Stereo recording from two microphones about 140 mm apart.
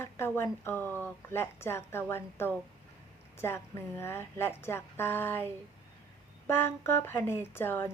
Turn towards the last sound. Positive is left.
turn(degrees=15)  # may be behind; listen again after turning